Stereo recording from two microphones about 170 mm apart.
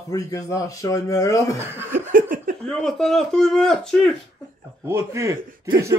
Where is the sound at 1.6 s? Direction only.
15° right (ahead or behind).